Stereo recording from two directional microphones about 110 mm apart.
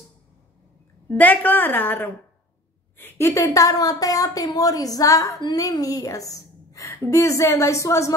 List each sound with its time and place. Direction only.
1.0 s a woman's voice: 15° left (ahead or behind)